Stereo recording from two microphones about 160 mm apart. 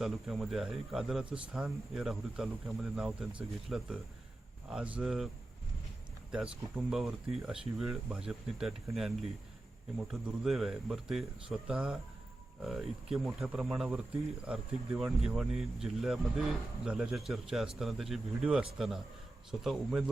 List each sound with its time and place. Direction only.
0.0 s speech: centre (ahead or behind)
6.3 s speech: 5° right (ahead or behind)